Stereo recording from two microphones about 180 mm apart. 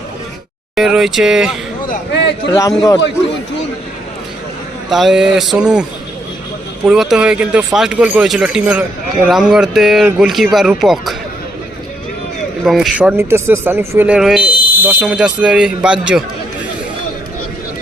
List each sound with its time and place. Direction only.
0.8 s speech: centre (ahead or behind)
2.5 s a man's voice: 20° left (ahead or behind)
4.9 s speech: centre (ahead or behind)
6.8 s speech: centre (ahead or behind)
12.6 s speech: centre (ahead or behind)